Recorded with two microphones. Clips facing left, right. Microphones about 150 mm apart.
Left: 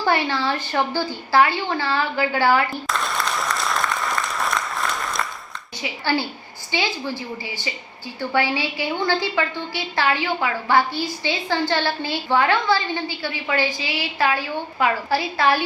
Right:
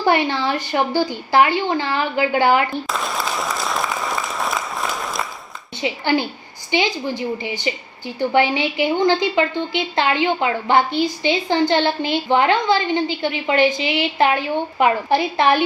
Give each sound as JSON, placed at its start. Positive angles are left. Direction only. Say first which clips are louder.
{"t": 0.0, "sound": "speech", "louder": "right 3 dB", "side_deg": -15}
{"t": 2.6, "sound": "applause", "louder": "right 2 dB", "side_deg": 0}
{"t": 5.8, "sound": "a woman's voice", "louder": "right 4 dB", "side_deg": -20}